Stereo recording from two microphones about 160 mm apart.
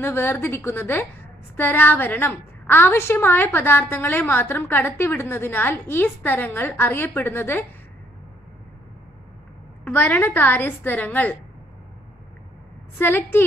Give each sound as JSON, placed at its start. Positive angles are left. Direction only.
{"t": 0.0, "sound": "a woman's voice", "side_deg": 15}
{"t": 9.8, "sound": "a woman's voice", "side_deg": 10}
{"t": 13.0, "sound": "a woman's voice", "side_deg": 15}